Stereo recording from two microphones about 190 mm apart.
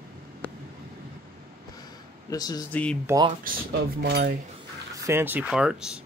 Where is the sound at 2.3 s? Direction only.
20° left (ahead or behind).